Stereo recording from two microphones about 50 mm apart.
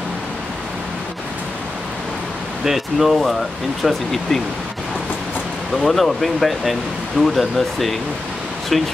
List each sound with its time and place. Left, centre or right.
2.6 s speech: centre
5.9 s speech: centre